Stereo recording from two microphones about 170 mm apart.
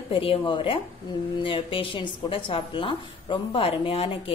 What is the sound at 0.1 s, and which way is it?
A woman's voice, 30° left (ahead or behind).